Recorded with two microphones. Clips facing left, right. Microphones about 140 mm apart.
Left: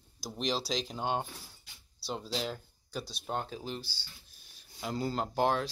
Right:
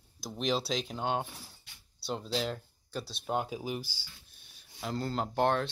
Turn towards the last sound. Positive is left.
turn(degrees=0)  # may be behind; listen again after turning